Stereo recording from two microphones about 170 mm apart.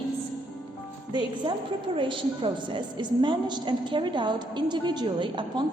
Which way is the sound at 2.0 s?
30° right (ahead or behind).